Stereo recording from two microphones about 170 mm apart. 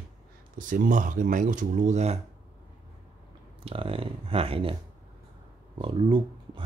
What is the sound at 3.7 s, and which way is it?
Speech, 30° right (ahead or behind).